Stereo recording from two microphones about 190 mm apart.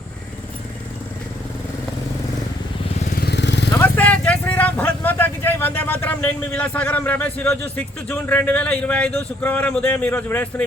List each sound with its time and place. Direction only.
3.2 s vehicle: 60° left (ahead or behind)
3.8 s speech: 10° left (ahead or behind)